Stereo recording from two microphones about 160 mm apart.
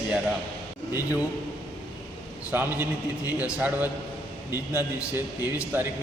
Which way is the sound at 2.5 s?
10° right (ahead or behind).